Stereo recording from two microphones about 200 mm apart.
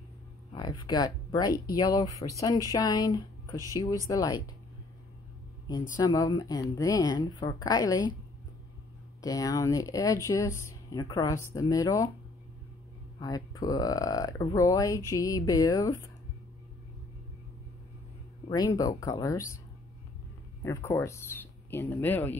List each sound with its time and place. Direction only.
0.5 s a woman's voice: 20° left (ahead or behind)
3.5 s speech: 15° right (ahead or behind)
4.1 s speech: 15° left (ahead or behind)
5.9 s a woman's voice: 20° left (ahead or behind)
9.2 s speech: 15° left (ahead or behind)
13.2 s speech: 20° left (ahead or behind)
18.5 s speech: 15° left (ahead or behind)
20.6 s speech: 15° left (ahead or behind)